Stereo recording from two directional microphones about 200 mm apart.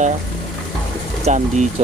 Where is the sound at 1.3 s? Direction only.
35° right (ahead or behind).